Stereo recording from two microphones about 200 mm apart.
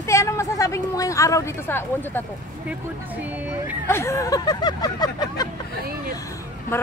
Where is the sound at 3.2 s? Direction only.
10° right (ahead or behind).